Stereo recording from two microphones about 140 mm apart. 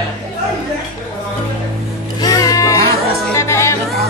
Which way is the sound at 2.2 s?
25° left (ahead or behind).